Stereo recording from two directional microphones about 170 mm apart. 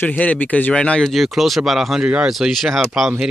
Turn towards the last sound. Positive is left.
turn(degrees=-5)  # may be behind; listen again after turning